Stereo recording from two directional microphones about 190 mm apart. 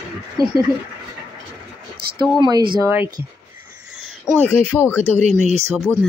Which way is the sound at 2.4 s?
25° right (ahead or behind).